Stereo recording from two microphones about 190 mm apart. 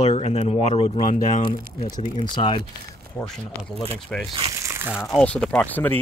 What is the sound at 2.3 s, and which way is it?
Speech, 25° left (ahead or behind).